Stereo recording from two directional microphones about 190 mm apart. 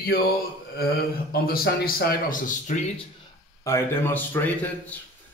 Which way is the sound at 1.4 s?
50° left (ahead or behind).